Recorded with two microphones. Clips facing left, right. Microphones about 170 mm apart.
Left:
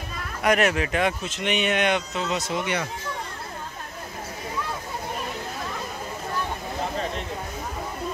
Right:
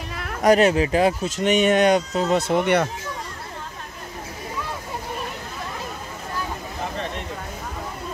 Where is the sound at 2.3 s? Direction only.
55° right (ahead or behind).